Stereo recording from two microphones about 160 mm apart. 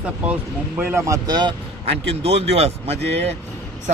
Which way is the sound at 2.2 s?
40° right (ahead or behind).